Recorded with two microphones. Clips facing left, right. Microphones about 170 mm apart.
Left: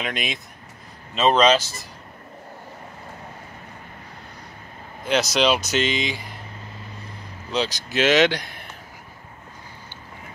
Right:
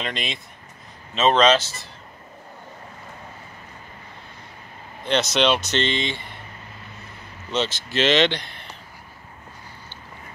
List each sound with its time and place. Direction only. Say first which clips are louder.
0.0 s speech: left 1 dB; centre (ahead or behind)
5.0 s speech: even; centre (ahead or behind)
7.5 s speech: even; centre (ahead or behind)